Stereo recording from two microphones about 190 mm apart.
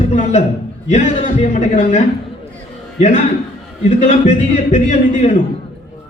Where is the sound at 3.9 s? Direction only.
40° left (ahead or behind).